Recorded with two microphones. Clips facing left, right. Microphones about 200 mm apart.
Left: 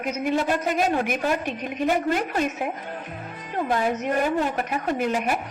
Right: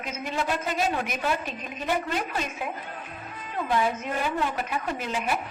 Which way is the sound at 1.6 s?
70° left (ahead or behind).